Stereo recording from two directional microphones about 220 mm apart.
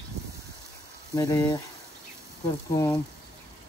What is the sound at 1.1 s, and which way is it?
Speech, 15° left (ahead or behind).